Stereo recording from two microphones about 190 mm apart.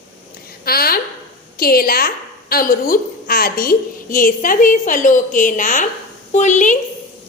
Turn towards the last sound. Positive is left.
turn(degrees=40)  # may be behind; listen again after turning